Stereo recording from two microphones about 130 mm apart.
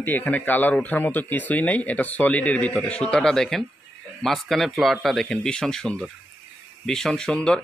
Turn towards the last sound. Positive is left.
turn(degrees=5)  # may be behind; listen again after turning